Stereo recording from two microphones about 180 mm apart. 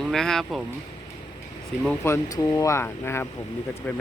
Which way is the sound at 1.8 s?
10° left (ahead or behind).